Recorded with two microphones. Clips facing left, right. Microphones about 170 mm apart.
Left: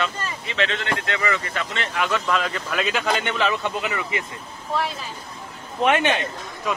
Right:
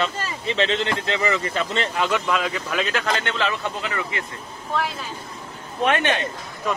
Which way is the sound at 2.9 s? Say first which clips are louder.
Left 1 dB; 10° left (ahead or behind).